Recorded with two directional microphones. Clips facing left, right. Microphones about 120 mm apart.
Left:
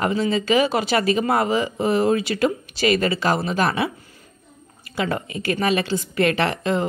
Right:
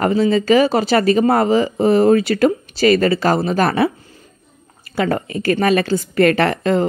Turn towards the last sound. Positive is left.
turn(degrees=-45)  # may be behind; listen again after turning